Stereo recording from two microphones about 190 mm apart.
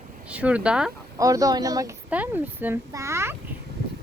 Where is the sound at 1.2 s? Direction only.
15° right (ahead or behind).